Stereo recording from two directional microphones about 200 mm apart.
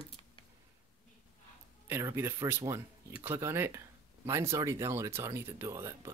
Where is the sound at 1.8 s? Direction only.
10° right (ahead or behind).